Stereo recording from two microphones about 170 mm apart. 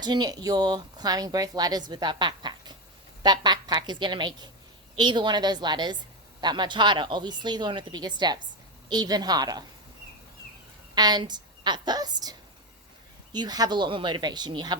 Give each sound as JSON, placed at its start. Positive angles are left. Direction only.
{"t": 0.0, "sound": "speech", "side_deg": -25}
{"t": 10.9, "sound": "speech", "side_deg": -25}